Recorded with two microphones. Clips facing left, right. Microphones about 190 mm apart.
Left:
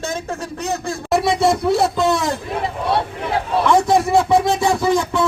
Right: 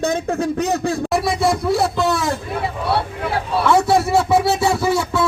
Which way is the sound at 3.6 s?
5° right (ahead or behind).